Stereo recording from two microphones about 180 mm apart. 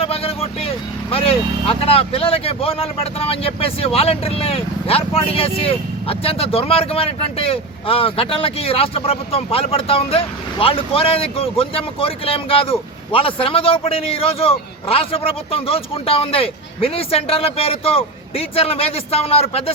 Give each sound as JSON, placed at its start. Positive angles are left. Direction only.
{"t": 0.0, "sound": "vehicle", "side_deg": 30}
{"t": 1.1, "sound": "speech", "side_deg": 30}